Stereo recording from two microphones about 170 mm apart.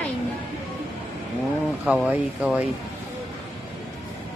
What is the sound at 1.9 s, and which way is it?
Speech, 5° right (ahead or behind).